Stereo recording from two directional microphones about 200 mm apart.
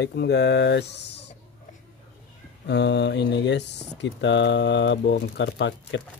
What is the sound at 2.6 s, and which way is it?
Speech, 60° left (ahead or behind).